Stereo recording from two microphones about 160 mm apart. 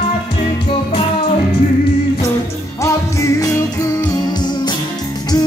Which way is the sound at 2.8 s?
20° left (ahead or behind).